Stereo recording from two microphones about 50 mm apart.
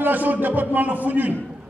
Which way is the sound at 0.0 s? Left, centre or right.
Right.